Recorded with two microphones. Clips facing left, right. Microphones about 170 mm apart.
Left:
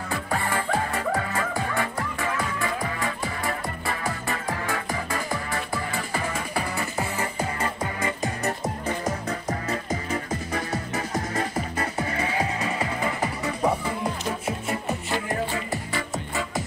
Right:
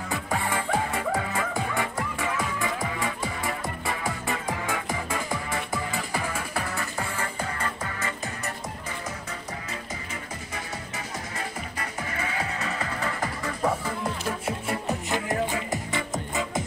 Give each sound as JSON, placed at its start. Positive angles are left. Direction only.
{"t": 0.4, "sound": "music", "side_deg": -10}
{"t": 6.8, "sound": "music", "side_deg": 15}
{"t": 8.5, "sound": "music", "side_deg": 35}
{"t": 10.5, "sound": "music", "side_deg": 45}
{"t": 12.5, "sound": "music", "side_deg": 15}
{"t": 15.7, "sound": "music", "side_deg": -20}